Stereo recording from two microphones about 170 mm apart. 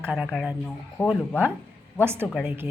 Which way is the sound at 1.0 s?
20° left (ahead or behind).